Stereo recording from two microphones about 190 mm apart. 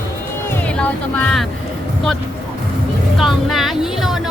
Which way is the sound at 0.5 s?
5° left (ahead or behind).